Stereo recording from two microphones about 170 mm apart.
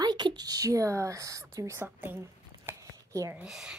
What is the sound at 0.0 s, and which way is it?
Speech, 25° right (ahead or behind).